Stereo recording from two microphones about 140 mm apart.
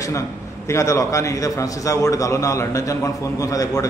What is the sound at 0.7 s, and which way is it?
A man's voice, 20° left (ahead or behind).